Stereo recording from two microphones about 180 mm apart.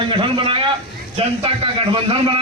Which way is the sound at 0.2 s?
30° right (ahead or behind).